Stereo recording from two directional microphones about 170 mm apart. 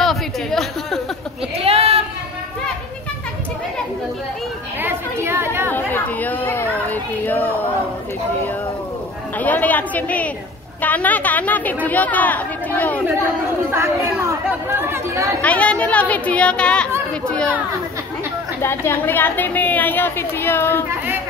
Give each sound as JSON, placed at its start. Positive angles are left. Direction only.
{"t": 0.0, "sound": "a sound", "side_deg": 0}
{"t": 1.6, "sound": "a sound", "side_deg": -35}
{"t": 4.8, "sound": "chatter", "side_deg": -15}
{"t": 5.7, "sound": "chatter", "side_deg": 10}
{"t": 9.4, "sound": "a woman's voice", "side_deg": 10}
{"t": 13.7, "sound": "speech", "side_deg": -15}
{"t": 15.4, "sound": "a woman's voice", "side_deg": 5}
{"t": 18.6, "sound": "a woman's voice", "side_deg": 15}